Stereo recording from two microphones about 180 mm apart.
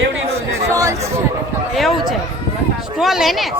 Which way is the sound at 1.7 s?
Centre (ahead or behind).